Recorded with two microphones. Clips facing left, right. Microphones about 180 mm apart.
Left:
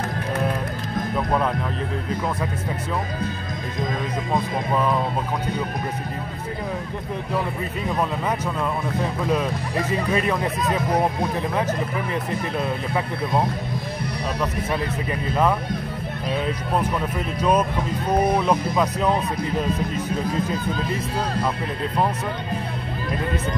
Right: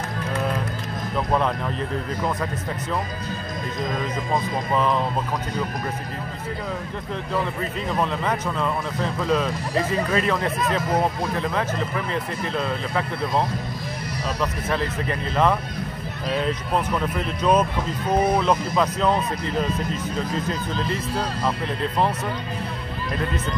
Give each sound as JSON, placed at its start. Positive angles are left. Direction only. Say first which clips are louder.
{"t": 1.1, "sound": "speech", "louder": "right 1 dB", "side_deg": 5}
{"t": 4.3, "sound": "speech", "louder": "left 1 dB", "side_deg": 5}
{"t": 8.0, "sound": "speech", "louder": "even", "side_deg": 10}
{"t": 17.4, "sound": "speech", "louder": "even", "side_deg": 10}